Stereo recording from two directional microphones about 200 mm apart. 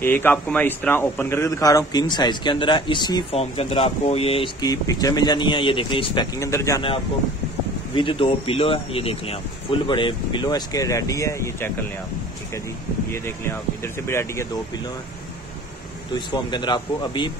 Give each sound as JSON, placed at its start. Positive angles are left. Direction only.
{"t": 0.0, "sound": "a man's voice", "side_deg": 10}
{"t": 6.4, "sound": "speech", "side_deg": 15}
{"t": 7.9, "sound": "a man's voice", "side_deg": 25}
{"t": 14.0, "sound": "speech", "side_deg": 15}
{"t": 16.3, "sound": "a man's voice", "side_deg": 20}